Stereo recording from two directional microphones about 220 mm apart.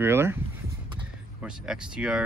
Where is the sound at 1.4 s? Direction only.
5° right (ahead or behind).